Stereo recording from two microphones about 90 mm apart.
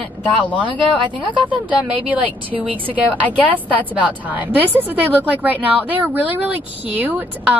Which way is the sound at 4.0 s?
15° right (ahead or behind).